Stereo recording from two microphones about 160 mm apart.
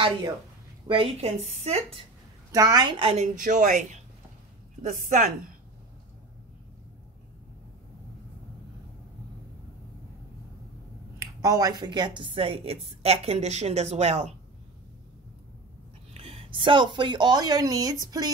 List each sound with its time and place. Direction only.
0.8 s speech: 35° right (ahead or behind)
2.5 s a woman's voice: 20° right (ahead or behind)
3.3 s a woman's voice: 55° right (ahead or behind)
11.4 s a woman's voice: 20° right (ahead or behind); by 14.3 s 45° right (ahead or behind)
16.1 s a woman's voice: 40° right (ahead or behind)